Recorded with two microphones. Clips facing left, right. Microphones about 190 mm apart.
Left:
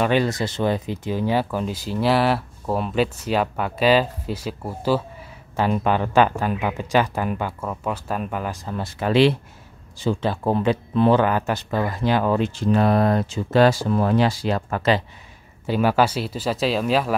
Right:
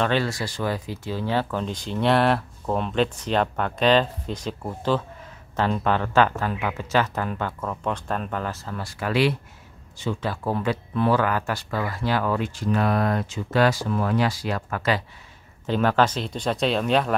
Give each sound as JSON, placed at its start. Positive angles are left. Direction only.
{"t": 0.0, "sound": "speech", "side_deg": 15}
{"t": 15.6, "sound": "speech", "side_deg": 10}